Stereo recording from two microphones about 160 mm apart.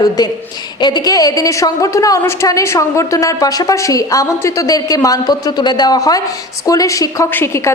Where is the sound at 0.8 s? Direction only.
25° left (ahead or behind).